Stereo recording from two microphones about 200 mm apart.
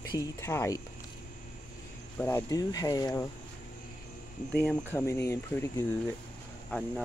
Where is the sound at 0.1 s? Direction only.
15° left (ahead or behind).